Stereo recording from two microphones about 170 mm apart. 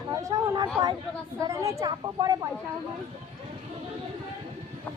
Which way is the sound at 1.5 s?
20° right (ahead or behind).